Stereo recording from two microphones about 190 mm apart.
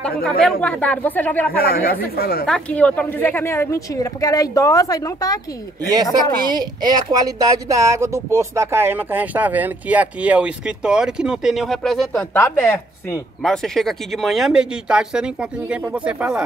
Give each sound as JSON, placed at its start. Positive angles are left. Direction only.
{"t": 0.2, "sound": "speech", "side_deg": 5}
{"t": 1.6, "sound": "speech", "side_deg": 50}
{"t": 2.4, "sound": "speech", "side_deg": 5}
{"t": 6.4, "sound": "speech", "side_deg": -20}
{"t": 12.4, "sound": "speech", "side_deg": 10}